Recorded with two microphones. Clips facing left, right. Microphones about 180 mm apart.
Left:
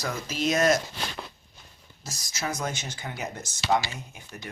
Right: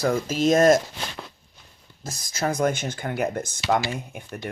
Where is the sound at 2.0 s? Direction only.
55° right (ahead or behind).